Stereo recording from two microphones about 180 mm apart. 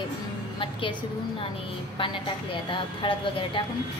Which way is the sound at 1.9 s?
25° left (ahead or behind).